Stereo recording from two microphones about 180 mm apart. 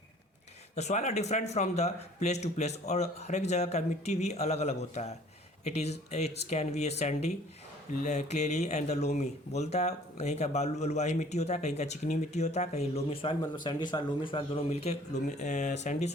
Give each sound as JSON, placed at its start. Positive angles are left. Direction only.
{"t": 0.8, "sound": "speech", "side_deg": 40}
{"t": 13.7, "sound": "speech", "side_deg": 25}